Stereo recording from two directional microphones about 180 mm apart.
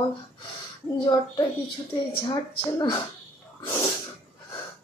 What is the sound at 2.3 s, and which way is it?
Speech, 20° left (ahead or behind).